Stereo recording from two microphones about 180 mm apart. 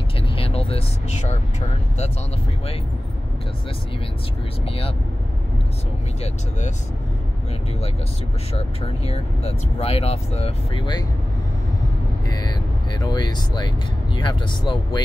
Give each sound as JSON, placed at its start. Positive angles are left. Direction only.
{"t": 0.4, "sound": "speech", "side_deg": 30}
{"t": 4.6, "sound": "speech", "side_deg": 30}
{"t": 8.5, "sound": "speech", "side_deg": 35}
{"t": 12.3, "sound": "speech", "side_deg": 20}